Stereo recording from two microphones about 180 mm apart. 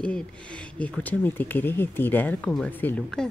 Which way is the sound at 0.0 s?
5° left (ahead or behind).